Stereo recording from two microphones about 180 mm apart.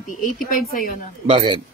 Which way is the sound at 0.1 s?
50° left (ahead or behind).